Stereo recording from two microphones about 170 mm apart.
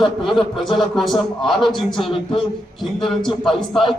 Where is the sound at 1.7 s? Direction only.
30° left (ahead or behind).